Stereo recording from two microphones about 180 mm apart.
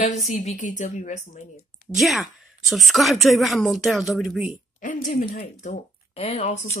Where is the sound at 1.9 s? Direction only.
Centre (ahead or behind).